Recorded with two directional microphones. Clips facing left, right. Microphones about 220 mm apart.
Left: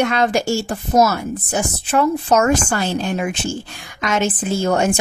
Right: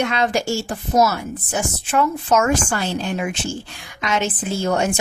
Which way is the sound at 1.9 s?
40° left (ahead or behind).